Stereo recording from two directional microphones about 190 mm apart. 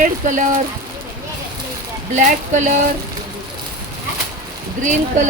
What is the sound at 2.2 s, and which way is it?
Speech, 45° right (ahead or behind).